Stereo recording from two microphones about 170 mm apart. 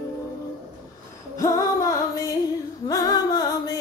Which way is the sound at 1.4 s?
20° left (ahead or behind).